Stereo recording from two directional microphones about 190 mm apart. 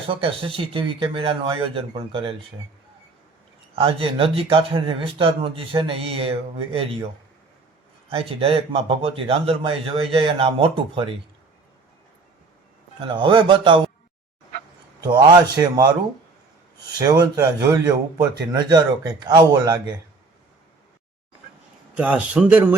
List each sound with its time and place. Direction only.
0.1 s a man's voice: 30° right (ahead or behind)
3.8 s a man's voice: 30° right (ahead or behind)
8.1 s a man's voice: 30° right (ahead or behind)
13.0 s a man's voice: 25° right (ahead or behind)
15.0 s a man's voice: 20° right (ahead or behind)
21.9 s speech: 10° right (ahead or behind)